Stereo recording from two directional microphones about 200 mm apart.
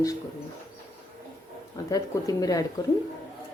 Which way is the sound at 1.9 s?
20° left (ahead or behind).